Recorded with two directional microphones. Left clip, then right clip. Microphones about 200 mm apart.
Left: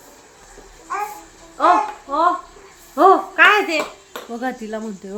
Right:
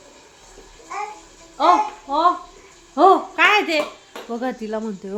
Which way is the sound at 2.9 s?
35° right (ahead or behind).